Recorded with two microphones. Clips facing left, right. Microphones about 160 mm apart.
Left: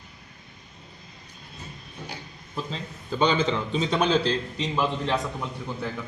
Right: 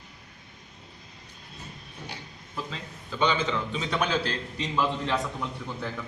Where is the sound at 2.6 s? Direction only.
30° left (ahead or behind).